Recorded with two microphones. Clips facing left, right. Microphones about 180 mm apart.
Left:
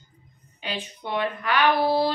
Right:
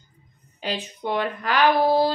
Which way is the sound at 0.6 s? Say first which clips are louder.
Right 5 dB; 40° right (ahead or behind).